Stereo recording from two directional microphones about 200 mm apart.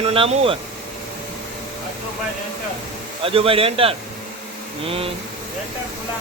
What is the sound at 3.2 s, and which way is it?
A man's voice, 25° right (ahead or behind).